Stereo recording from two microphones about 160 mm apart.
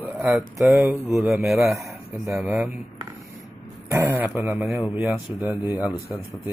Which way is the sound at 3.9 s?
15° right (ahead or behind).